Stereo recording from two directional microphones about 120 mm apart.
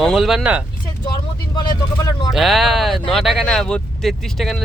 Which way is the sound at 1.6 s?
30° left (ahead or behind).